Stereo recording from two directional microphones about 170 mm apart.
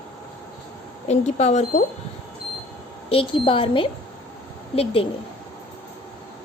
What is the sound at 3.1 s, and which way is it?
A woman's voice, 30° left (ahead or behind).